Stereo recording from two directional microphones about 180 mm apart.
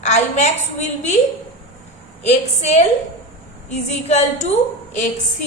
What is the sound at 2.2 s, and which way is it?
A woman's voice, 40° left (ahead or behind).